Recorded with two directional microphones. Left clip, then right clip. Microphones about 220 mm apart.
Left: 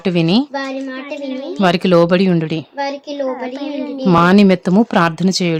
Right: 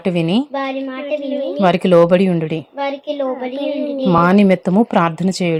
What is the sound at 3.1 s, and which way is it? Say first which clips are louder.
Speech: right 1 dB; 35° left (ahead or behind).